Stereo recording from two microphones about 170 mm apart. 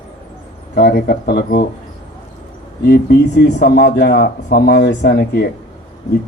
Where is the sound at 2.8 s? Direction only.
65° left (ahead or behind).